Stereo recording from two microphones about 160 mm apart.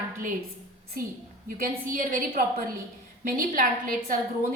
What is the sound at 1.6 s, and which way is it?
A woman's voice, 60° right (ahead or behind).